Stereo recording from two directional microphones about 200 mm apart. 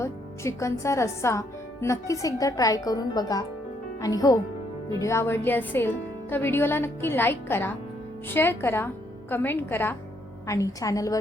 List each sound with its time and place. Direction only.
0.0 s a woman's voice: 15° left (ahead or behind)